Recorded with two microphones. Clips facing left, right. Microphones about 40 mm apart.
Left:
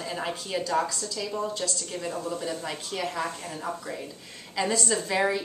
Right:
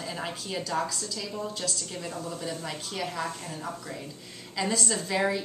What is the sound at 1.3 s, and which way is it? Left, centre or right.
Speech, centre.